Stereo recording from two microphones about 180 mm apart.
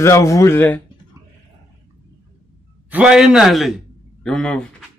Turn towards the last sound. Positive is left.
turn(degrees=5)  # may be behind; listen again after turning